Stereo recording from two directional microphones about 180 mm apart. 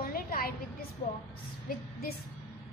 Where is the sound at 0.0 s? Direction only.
55° left (ahead or behind).